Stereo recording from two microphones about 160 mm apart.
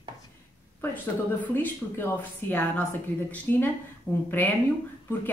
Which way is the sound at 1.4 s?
10° left (ahead or behind).